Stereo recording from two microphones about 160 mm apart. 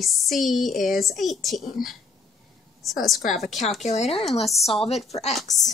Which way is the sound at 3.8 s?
45° left (ahead or behind).